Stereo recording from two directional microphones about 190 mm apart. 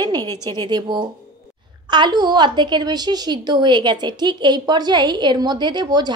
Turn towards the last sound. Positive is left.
turn(degrees=-20)  # may be behind; listen again after turning